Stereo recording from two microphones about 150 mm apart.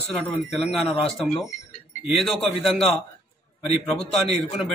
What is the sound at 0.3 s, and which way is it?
Speech, centre (ahead or behind).